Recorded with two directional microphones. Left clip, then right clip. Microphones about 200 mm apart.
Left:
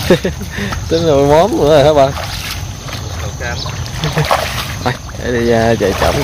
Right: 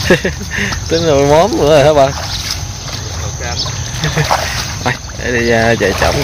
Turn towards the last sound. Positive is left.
turn(degrees=5)  # may be behind; listen again after turning